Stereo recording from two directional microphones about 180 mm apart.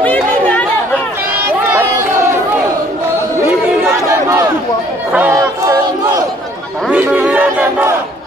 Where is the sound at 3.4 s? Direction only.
15° right (ahead or behind).